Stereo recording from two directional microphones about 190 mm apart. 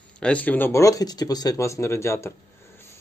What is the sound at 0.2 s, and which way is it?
Speech, 5° left (ahead or behind).